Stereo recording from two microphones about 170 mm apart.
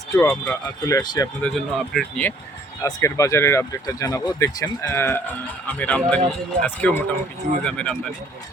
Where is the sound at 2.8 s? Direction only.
20° left (ahead or behind).